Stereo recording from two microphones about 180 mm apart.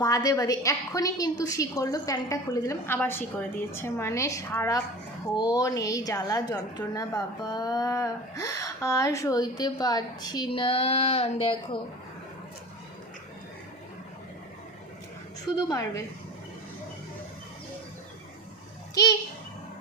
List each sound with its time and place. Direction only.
0.0 s a woman's voice: 20° left (ahead or behind)
15.7 s a woman's voice: 15° left (ahead or behind)